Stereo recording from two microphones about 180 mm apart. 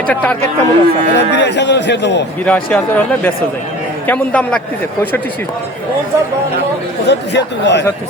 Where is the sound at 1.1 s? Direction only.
75° left (ahead or behind).